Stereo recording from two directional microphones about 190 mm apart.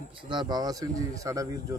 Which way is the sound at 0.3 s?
20° right (ahead or behind).